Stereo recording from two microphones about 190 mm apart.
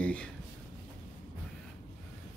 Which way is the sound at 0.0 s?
5° left (ahead or behind).